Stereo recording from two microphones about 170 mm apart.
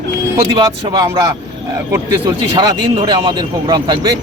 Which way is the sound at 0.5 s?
25° right (ahead or behind).